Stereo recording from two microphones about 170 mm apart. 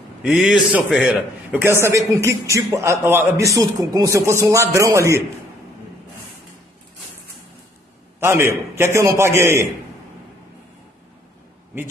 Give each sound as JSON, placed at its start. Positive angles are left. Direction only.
{"t": 0.2, "sound": "a man's voice", "side_deg": 0}
{"t": 8.2, "sound": "a man's voice", "side_deg": -15}